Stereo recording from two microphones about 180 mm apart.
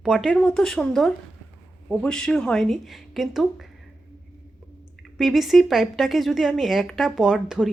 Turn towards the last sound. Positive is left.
turn(degrees=0)  # may be behind; listen again after turning